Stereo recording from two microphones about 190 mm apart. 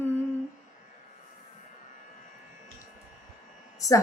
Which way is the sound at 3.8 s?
15° left (ahead or behind).